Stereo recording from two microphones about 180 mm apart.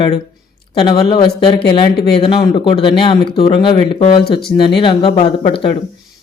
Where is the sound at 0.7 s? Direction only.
25° left (ahead or behind).